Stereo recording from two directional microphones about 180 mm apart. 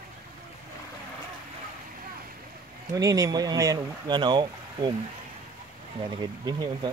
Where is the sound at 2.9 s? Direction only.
20° right (ahead or behind).